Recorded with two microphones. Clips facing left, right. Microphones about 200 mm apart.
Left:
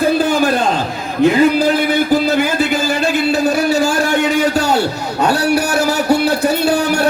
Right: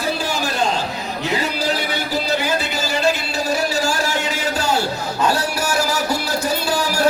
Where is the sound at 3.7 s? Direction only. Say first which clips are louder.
Left 7 dB; 60° left (ahead or behind).